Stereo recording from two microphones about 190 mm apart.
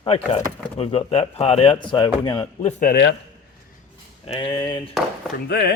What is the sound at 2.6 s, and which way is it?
Speech, 50° left (ahead or behind).